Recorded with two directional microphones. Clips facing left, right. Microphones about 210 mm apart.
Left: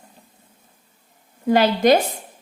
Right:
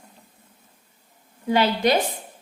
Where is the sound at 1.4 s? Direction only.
45° left (ahead or behind).